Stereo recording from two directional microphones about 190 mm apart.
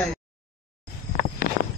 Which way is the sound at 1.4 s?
50° left (ahead or behind).